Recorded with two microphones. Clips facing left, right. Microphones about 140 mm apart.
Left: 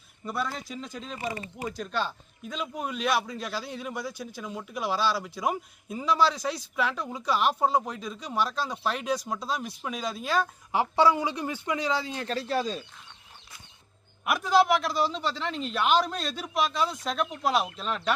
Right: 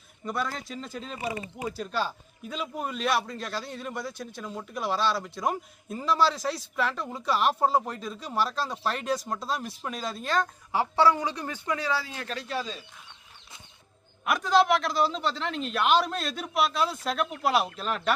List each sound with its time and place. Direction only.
0.3 s a man's voice: centre (ahead or behind)
10.7 s speech: 15° left (ahead or behind); by 12.8 s 40° left (ahead or behind)
14.3 s a man's voice: 5° left (ahead or behind)